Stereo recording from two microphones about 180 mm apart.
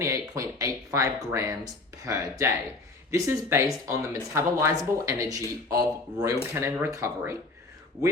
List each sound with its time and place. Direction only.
0.0 s speech: 20° right (ahead or behind)